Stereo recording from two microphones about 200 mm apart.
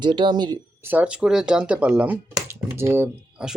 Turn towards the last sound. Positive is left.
turn(degrees=-5)  # may be behind; listen again after turning